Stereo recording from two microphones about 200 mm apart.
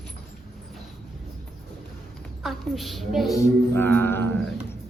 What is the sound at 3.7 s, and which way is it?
Mantra, 10° left (ahead or behind).